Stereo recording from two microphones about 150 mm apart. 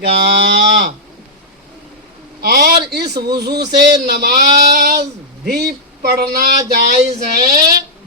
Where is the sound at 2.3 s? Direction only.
90° right.